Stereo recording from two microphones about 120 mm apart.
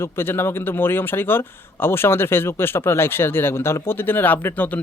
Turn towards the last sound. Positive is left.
turn(degrees=15)  # may be behind; listen again after turning